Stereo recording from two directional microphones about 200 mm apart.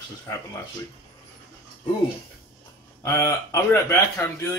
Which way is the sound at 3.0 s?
15° left (ahead or behind).